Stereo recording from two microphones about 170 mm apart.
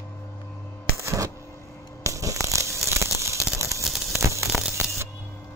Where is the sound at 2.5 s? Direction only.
15° right (ahead or behind).